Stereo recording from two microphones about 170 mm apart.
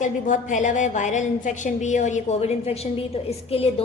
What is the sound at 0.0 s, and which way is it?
A woman's voice, 45° left (ahead or behind).